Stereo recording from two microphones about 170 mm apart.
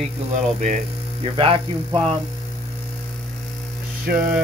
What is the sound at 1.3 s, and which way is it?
Speech, 30° right (ahead or behind).